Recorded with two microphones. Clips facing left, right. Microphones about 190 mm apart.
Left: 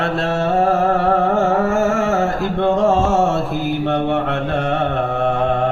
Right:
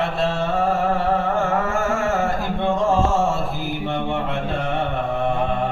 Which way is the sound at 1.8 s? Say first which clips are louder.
Left 4 dB; 75° left (ahead or behind).